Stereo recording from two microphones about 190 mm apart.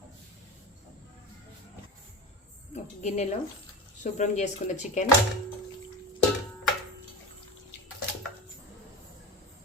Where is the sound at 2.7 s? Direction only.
40° left (ahead or behind).